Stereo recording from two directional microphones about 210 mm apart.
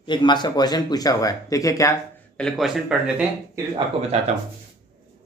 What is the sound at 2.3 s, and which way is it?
Speech, centre (ahead or behind).